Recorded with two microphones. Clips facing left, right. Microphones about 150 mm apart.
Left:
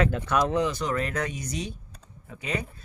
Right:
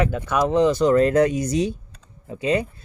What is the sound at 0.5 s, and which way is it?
Speech, 30° right (ahead or behind).